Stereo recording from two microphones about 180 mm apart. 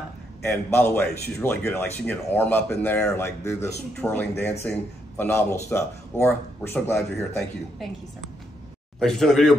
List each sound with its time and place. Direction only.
0.4 s speech: 15° left (ahead or behind)
9.0 s a man's voice: centre (ahead or behind)